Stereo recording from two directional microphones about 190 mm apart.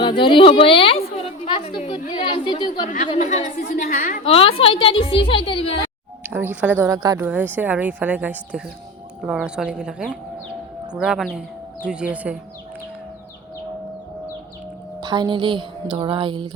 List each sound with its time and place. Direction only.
0.0 s a woman's voice: 25° left (ahead or behind)
3.1 s a woman's voice: 40° left (ahead or behind)
4.2 s a woman's voice: 30° left (ahead or behind)
6.3 s speech: 10° right (ahead or behind)
15.0 s a woman's voice: 20° right (ahead or behind)